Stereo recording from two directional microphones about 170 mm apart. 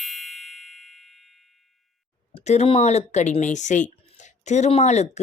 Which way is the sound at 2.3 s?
40° left (ahead or behind).